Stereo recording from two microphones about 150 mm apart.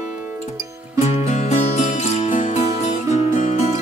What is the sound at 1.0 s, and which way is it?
Music, 50° left (ahead or behind).